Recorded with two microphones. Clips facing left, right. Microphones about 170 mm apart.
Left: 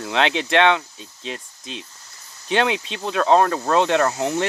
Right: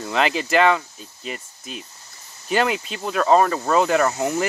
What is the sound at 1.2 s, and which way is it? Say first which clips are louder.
Speech: left 1 dB; 90° left.